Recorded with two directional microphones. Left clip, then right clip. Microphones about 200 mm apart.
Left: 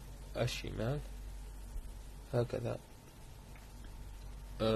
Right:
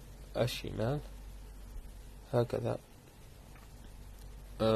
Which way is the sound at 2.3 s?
20° right (ahead or behind).